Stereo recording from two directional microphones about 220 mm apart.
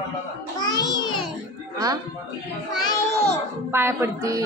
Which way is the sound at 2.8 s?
30° left (ahead or behind).